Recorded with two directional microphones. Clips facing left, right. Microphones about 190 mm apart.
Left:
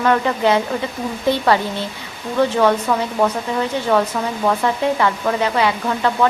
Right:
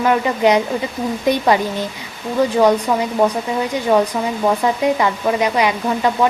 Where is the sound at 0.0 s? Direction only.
15° right (ahead or behind).